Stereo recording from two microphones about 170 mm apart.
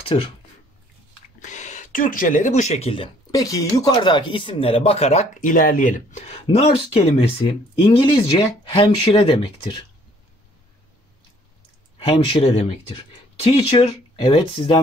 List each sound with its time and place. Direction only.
0.0 s speech: 30° left (ahead or behind)
1.4 s speech: 45° left (ahead or behind)
3.3 s speech: 20° left (ahead or behind)
12.1 s speech: 35° left (ahead or behind)